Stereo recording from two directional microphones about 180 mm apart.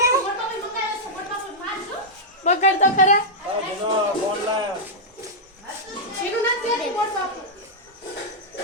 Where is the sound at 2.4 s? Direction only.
40° left (ahead or behind).